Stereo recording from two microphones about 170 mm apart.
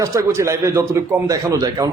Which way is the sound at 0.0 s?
15° right (ahead or behind).